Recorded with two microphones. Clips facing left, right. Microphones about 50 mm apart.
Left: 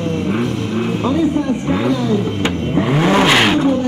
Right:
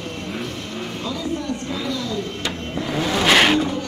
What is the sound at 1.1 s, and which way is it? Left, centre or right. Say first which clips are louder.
Vehicle: left 9 dB; left.